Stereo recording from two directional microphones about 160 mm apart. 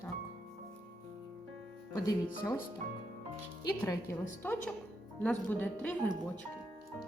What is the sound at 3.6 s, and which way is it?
Speech, 20° left (ahead or behind).